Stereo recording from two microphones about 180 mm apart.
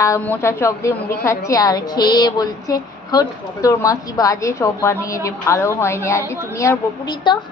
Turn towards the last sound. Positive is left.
turn(degrees=25)  # may be behind; listen again after turning